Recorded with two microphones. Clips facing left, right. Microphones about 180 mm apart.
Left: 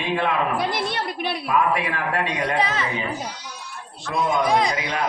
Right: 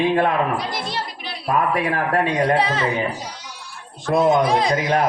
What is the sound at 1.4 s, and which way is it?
A man's voice, 45° right (ahead or behind).